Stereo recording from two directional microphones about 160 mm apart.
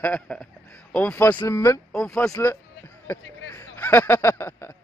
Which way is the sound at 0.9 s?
10° left (ahead or behind).